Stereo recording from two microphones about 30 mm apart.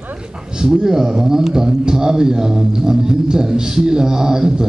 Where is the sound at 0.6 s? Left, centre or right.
Right.